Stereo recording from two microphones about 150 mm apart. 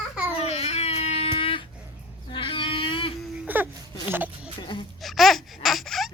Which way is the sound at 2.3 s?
35° left (ahead or behind).